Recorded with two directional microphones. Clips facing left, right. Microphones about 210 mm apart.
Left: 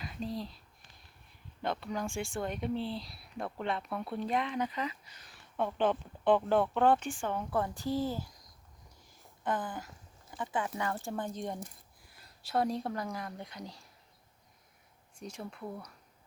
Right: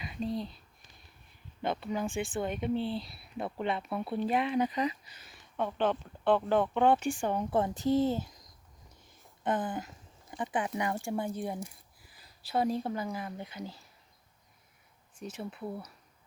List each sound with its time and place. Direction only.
0.0 s speech: centre (ahead or behind)
1.6 s speech: centre (ahead or behind)
5.3 s speech: 5° left (ahead or behind)
6.7 s speech: 5° right (ahead or behind)
7.1 s a woman's voice: 15° right (ahead or behind)
15.2 s speech: 5° right (ahead or behind)